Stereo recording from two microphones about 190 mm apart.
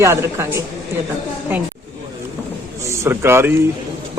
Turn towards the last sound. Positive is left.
turn(degrees=-15)  # may be behind; listen again after turning